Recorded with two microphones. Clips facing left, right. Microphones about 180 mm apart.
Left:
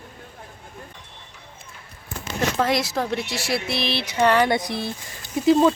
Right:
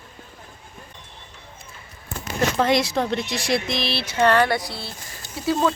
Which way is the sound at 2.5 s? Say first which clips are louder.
Right 3 dB; centre (ahead or behind).